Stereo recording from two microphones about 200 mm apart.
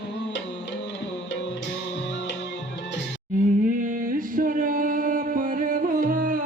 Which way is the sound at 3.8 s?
40° right (ahead or behind).